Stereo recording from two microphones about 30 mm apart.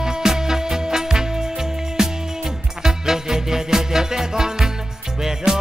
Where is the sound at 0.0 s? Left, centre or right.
Centre.